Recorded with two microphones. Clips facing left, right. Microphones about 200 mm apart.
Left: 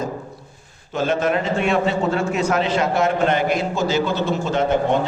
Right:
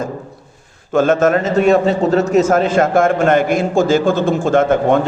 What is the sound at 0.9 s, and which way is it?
A man's voice, 45° right (ahead or behind).